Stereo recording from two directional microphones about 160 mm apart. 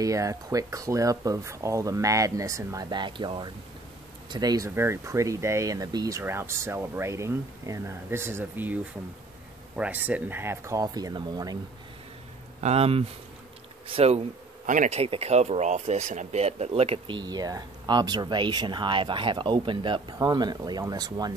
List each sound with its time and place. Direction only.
0.0 s speech: 20° right (ahead or behind)
9.8 s speech: 10° right (ahead or behind)
12.5 s speech: 40° right (ahead or behind); by 21.3 s 25° right (ahead or behind)